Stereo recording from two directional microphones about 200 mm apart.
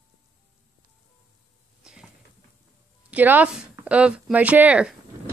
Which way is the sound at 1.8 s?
5° right (ahead or behind).